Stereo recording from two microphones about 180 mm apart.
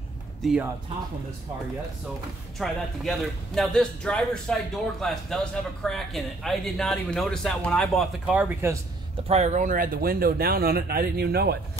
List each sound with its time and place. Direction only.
0.4 s speech: 5° right (ahead or behind)
2.6 s a man's voice: centre (ahead or behind)
9.3 s speech: 40° right (ahead or behind); by 11.5 s 60° right (ahead or behind)